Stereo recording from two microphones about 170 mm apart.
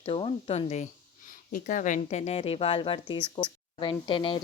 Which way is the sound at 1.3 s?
50° left (ahead or behind).